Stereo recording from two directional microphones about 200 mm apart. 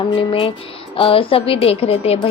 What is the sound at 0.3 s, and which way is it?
A woman's voice, 30° left (ahead or behind).